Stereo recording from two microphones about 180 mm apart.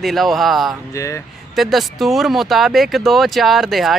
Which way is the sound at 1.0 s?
15° left (ahead or behind).